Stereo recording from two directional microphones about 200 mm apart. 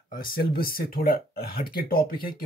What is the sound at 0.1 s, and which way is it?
Speech, 45° left (ahead or behind).